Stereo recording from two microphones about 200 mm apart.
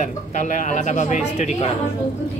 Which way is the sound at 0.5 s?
40° left (ahead or behind).